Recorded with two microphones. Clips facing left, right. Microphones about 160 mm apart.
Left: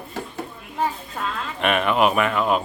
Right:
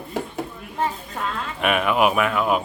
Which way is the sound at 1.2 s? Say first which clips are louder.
Even; 5° right (ahead or behind).